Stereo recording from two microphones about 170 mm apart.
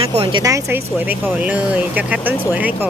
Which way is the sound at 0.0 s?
35° right (ahead or behind).